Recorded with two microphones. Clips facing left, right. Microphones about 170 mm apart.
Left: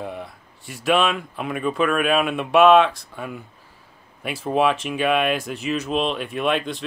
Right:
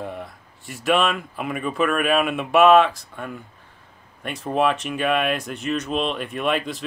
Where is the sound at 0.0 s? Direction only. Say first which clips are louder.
Even; centre (ahead or behind).